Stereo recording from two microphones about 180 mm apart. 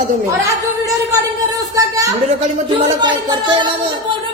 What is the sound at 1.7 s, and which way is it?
Speech, 20° right (ahead or behind).